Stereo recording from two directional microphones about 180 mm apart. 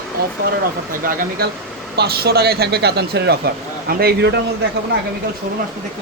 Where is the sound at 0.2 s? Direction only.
60° right (ahead or behind).